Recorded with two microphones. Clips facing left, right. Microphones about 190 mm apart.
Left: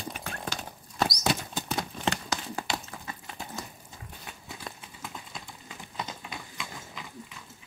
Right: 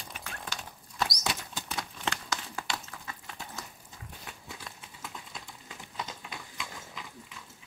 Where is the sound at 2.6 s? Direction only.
20° left (ahead or behind).